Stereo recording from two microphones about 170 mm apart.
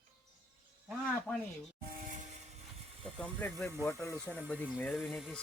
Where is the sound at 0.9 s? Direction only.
5° left (ahead or behind).